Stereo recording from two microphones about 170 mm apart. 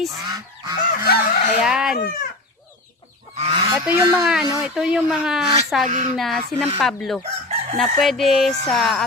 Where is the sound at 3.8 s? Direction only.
15° right (ahead or behind).